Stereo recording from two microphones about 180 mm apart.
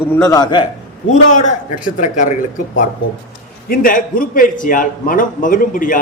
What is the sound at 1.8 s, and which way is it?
Speech, 50° left (ahead or behind).